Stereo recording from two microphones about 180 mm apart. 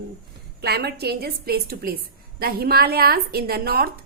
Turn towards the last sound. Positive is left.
turn(degrees=-60)  # may be behind; listen again after turning